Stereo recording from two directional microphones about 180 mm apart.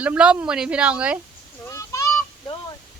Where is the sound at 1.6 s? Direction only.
15° left (ahead or behind).